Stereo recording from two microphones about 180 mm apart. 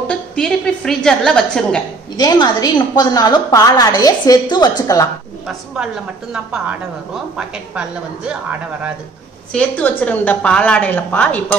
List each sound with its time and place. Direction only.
0.1 s a woman's voice: 5° left (ahead or behind)
2.1 s a woman's voice: 20° left (ahead or behind)
8.3 s speech: 5° right (ahead or behind)
9.5 s a woman's voice: 10° left (ahead or behind)